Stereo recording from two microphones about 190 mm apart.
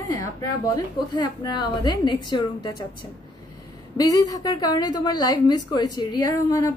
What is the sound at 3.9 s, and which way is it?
A woman's voice, 20° left (ahead or behind).